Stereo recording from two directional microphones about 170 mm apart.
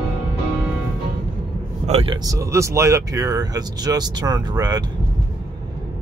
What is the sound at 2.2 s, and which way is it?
Speech, 20° right (ahead or behind).